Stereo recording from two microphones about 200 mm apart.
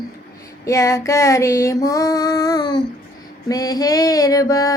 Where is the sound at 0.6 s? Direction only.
15° left (ahead or behind).